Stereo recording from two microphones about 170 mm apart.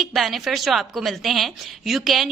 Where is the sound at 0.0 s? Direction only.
Centre (ahead or behind).